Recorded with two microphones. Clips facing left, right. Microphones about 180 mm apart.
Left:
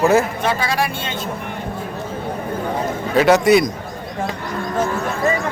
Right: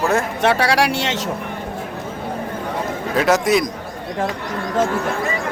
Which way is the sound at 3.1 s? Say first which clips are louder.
Left 4 dB; centre (ahead or behind).